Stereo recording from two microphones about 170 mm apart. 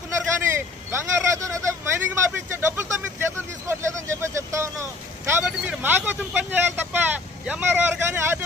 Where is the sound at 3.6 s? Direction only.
15° right (ahead or behind).